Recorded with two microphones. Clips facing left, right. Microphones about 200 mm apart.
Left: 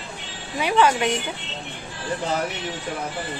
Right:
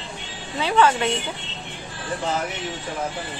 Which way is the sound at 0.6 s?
15° left (ahead or behind).